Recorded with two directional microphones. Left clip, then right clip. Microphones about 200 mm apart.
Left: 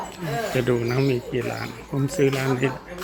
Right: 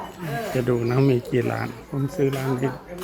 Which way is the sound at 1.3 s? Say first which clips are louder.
Right 3 dB; 30° right (ahead or behind).